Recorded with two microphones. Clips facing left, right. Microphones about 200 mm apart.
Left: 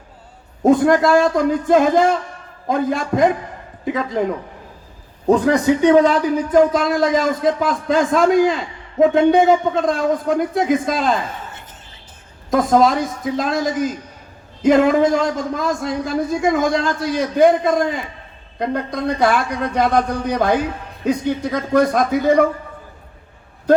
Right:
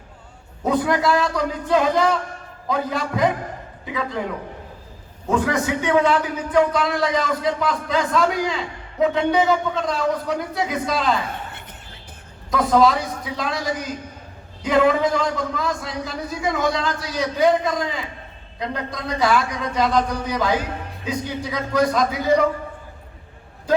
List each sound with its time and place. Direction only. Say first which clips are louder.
0.6 s a man's voice: left 7 dB; 45° left (ahead or behind)
5.3 s a man's voice: left 7 dB; 35° left (ahead or behind)
12.5 s a man's voice: left 3 dB; 45° left (ahead or behind)